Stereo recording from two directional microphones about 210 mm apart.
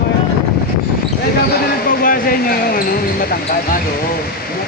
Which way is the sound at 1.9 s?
45° left (ahead or behind).